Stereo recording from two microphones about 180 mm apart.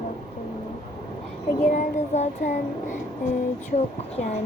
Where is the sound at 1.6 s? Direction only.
45° left (ahead or behind).